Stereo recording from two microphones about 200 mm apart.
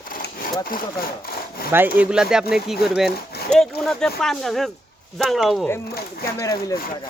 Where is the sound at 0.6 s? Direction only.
45° left (ahead or behind).